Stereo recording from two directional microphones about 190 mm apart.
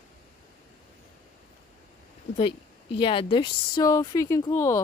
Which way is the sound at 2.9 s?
25° left (ahead or behind).